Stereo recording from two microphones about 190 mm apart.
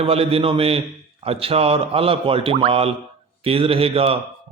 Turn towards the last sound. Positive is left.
turn(degrees=-30)  # may be behind; listen again after turning